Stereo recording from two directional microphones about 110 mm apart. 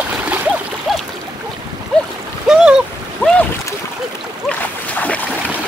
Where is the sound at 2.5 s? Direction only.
5° right (ahead or behind).